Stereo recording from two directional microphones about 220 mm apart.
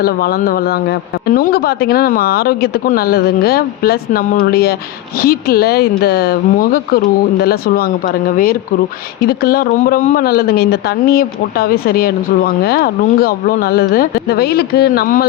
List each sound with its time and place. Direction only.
0.0 s speech: 45° left (ahead or behind)
9.2 s speech: 45° left (ahead or behind)